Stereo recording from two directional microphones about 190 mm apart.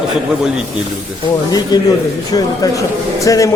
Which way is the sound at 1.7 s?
20° left (ahead or behind).